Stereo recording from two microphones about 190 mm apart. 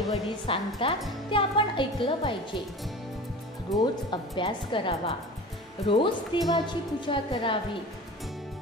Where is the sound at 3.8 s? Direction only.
25° left (ahead or behind).